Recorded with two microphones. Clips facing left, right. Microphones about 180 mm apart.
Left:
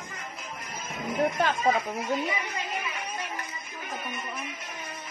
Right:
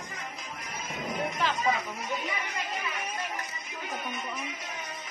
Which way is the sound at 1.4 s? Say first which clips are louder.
Left 4 dB; 50° left (ahead or behind).